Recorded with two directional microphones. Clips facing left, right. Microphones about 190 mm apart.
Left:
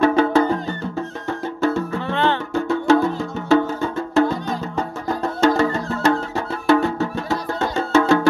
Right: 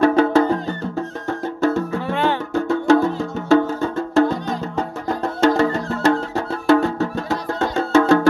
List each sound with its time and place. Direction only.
0.0 s music: 40° right (ahead or behind)
2.0 s music: 10° right (ahead or behind)
2.5 s music: 45° right (ahead or behind)
5.5 s music: 35° right (ahead or behind)